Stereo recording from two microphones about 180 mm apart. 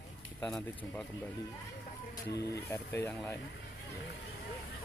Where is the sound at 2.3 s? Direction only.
65° left (ahead or behind).